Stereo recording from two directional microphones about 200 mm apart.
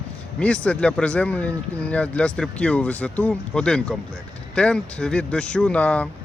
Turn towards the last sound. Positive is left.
turn(degrees=5)  # may be behind; listen again after turning